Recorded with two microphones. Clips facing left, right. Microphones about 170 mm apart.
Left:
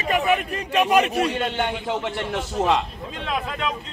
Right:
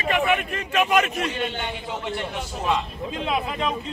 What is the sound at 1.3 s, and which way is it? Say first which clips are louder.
Speech: left 4 dB; 70° left (ahead or behind).